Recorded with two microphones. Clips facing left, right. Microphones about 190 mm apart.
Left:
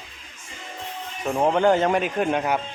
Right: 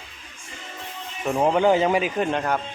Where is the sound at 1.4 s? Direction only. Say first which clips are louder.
Even; 5° right (ahead or behind).